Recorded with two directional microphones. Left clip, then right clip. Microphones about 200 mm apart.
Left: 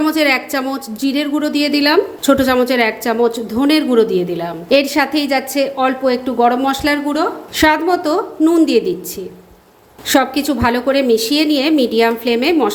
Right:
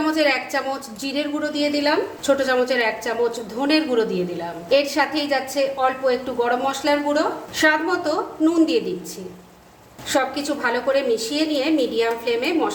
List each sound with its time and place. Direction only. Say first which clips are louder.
0.0 s a woman's voice: left 5 dB; 35° left (ahead or behind)
10.1 s a woman's voice: left 7 dB; 45° left (ahead or behind)